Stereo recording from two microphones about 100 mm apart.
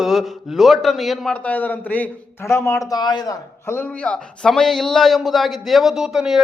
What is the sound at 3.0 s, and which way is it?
Speech, 45° left (ahead or behind).